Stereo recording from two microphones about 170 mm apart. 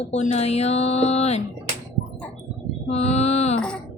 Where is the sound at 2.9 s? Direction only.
40° left (ahead or behind).